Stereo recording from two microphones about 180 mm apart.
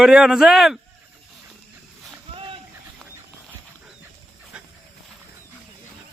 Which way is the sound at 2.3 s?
30° right (ahead or behind).